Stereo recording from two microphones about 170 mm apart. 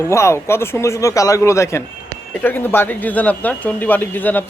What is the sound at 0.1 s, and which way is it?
Speech, 15° left (ahead or behind).